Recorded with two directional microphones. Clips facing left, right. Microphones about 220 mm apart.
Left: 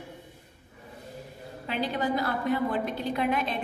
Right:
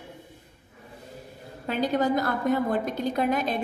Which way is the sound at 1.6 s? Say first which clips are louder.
Right 5 dB; 45° right (ahead or behind).